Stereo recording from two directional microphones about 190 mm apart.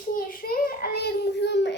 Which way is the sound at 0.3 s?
50° left (ahead or behind).